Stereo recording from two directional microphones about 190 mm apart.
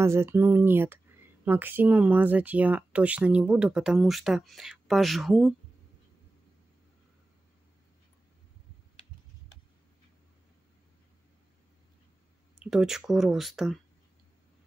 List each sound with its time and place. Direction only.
0.0 s speech: 15° right (ahead or behind)
12.5 s speech: 5° right (ahead or behind)